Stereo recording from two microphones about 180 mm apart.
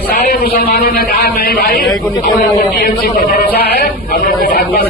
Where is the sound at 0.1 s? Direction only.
55° left (ahead or behind).